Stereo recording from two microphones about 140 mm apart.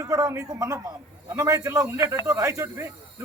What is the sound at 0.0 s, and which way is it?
A man's voice, 25° right (ahead or behind).